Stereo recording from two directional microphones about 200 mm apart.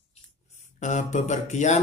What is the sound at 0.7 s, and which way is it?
Speech, 35° left (ahead or behind).